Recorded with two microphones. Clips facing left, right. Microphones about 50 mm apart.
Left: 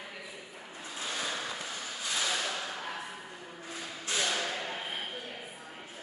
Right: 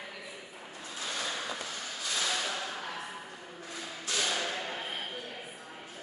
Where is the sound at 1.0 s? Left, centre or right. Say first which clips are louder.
Even; centre.